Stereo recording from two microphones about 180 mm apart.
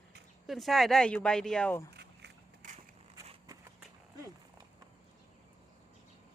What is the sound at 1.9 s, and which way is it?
Walk, 65° right (ahead or behind).